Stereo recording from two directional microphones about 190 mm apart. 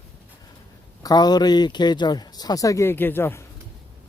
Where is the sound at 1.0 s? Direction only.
20° left (ahead or behind).